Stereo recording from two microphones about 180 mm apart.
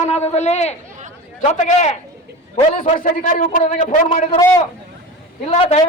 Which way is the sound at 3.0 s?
45° left (ahead or behind).